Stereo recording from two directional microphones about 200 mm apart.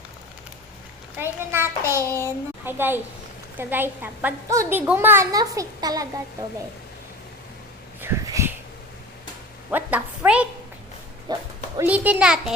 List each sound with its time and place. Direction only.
1.2 s a child's voice: 10° right (ahead or behind)
8.0 s a sound: 10° right (ahead or behind)
9.7 s a woman's voice: 5° right (ahead or behind)
11.3 s dog: 20° right (ahead or behind)
11.8 s a child's voice: 10° right (ahead or behind)